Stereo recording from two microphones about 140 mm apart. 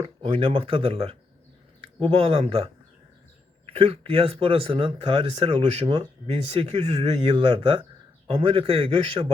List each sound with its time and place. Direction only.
0.2 s speech: 40° right (ahead or behind)
3.7 s speech: 45° right (ahead or behind)
7.3 s speech: 35° right (ahead or behind)